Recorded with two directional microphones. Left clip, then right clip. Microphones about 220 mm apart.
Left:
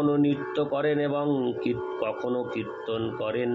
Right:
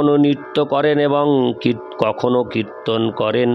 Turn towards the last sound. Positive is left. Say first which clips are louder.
# right 11 dB
turn(degrees=-50)  # may be behind; listen again after turning